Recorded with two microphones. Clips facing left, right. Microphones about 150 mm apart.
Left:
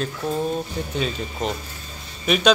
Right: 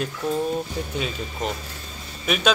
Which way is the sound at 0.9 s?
5° right (ahead or behind).